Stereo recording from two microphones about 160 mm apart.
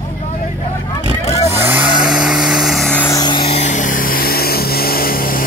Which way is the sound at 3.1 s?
25° left (ahead or behind).